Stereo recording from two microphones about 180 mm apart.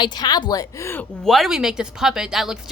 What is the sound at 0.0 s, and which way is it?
A woman's voice, 25° left (ahead or behind).